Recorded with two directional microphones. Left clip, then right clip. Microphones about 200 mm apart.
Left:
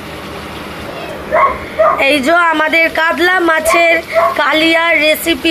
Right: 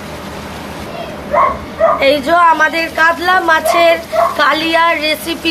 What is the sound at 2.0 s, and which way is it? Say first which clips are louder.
A woman's voice: right 1 dB; 30° left (ahead or behind).